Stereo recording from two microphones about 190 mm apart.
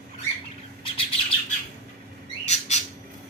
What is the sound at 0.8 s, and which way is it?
Bird, 30° left (ahead or behind).